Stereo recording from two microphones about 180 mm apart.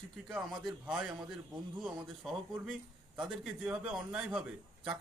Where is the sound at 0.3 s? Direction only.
Centre (ahead or behind).